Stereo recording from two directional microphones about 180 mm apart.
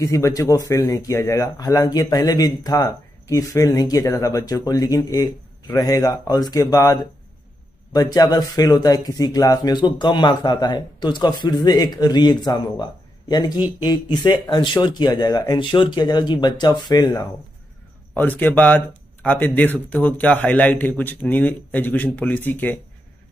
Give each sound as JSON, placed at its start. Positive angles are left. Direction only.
{"t": 0.0, "sound": "speech", "side_deg": 15}
{"t": 18.1, "sound": "a man's voice", "side_deg": 10}